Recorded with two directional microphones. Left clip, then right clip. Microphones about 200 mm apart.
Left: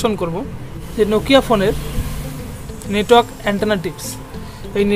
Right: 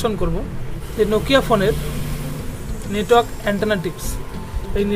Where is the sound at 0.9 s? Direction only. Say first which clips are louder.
Left 3 dB; 15° left (ahead or behind).